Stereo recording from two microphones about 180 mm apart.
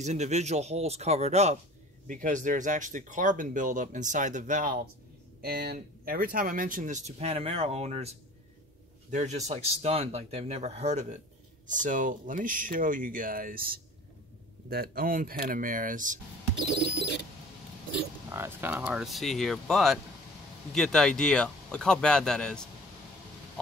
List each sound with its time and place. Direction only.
0.0 s speech: 40° right (ahead or behind)
5.4 s speech: 60° right (ahead or behind)
18.3 s speech: 10° right (ahead or behind); by 22.7 s 5° left (ahead or behind)